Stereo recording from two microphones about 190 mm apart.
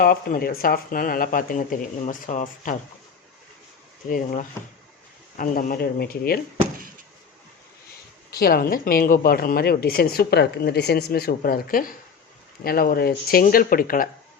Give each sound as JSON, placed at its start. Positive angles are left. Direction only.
{"t": 0.0, "sound": "speech", "side_deg": 50}
{"t": 4.1, "sound": "speech", "side_deg": 45}
{"t": 8.3, "sound": "speech", "side_deg": 55}